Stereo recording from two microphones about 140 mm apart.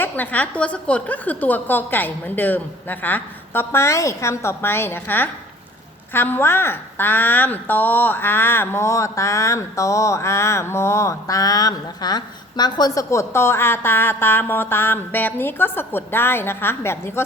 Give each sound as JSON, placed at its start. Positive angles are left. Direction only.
{"t": 0.0, "sound": "a woman's voice", "side_deg": 10}